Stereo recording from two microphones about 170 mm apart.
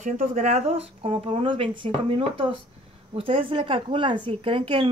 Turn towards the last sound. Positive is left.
turn(degrees=-30)  # may be behind; listen again after turning